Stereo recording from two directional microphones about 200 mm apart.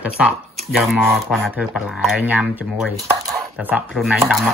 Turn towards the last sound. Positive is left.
turn(degrees=0)  # may be behind; listen again after turning